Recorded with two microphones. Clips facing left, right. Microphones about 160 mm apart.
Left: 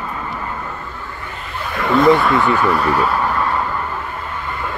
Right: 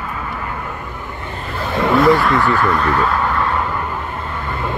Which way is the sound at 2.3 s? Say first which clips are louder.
Even; 15° left (ahead or behind).